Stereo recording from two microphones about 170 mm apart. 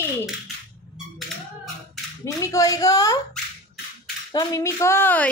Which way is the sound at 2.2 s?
20° left (ahead or behind).